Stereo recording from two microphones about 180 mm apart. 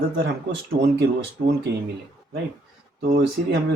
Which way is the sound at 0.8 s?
65° right (ahead or behind).